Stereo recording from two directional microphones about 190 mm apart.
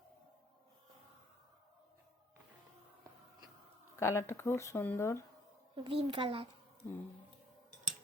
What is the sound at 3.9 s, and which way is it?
Speech, 15° left (ahead or behind).